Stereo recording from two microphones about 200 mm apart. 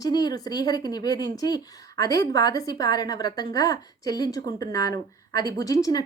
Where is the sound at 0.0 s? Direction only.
20° left (ahead or behind).